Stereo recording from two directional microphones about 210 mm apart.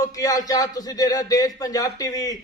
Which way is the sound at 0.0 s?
15° left (ahead or behind).